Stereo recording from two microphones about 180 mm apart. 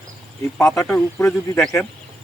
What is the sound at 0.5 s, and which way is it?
Speech, 5° left (ahead or behind).